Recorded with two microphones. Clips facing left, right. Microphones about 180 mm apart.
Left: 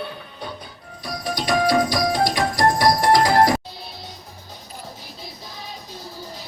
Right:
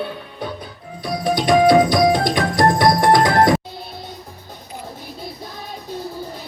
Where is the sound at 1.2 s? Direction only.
55° right (ahead or behind).